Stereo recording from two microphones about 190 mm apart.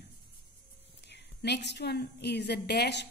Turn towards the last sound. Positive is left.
turn(degrees=60)  # may be behind; listen again after turning